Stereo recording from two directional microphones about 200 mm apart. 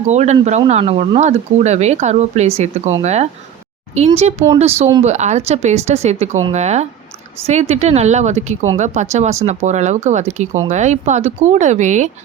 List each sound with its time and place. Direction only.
0.1 s speech: 35° right (ahead or behind)